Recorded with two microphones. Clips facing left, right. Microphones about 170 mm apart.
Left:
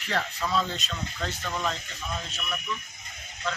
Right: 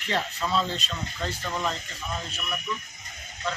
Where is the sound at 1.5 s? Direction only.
5° right (ahead or behind).